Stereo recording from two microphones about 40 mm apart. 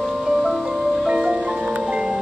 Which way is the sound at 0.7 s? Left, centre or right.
Right.